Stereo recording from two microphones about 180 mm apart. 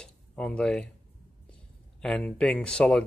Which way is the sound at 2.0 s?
5° left (ahead or behind).